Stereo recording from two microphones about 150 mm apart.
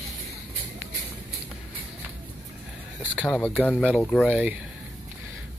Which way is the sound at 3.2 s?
5° left (ahead or behind).